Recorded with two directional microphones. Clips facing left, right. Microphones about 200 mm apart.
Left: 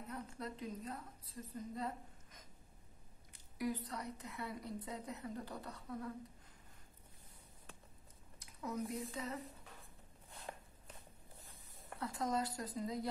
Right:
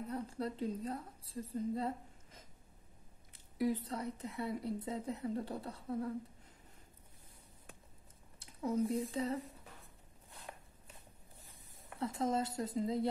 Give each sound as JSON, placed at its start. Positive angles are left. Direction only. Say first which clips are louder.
{"t": 0.1, "sound": "a woman's voice", "louder": "right 5 dB", "side_deg": -30}
{"t": 8.4, "sound": "speech", "louder": "right 8 dB", "side_deg": -30}
{"t": 12.0, "sound": "a woman's voice", "louder": "right 4 dB", "side_deg": -25}